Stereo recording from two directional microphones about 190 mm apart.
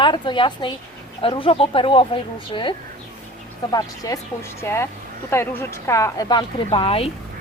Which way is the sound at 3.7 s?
20° left (ahead or behind).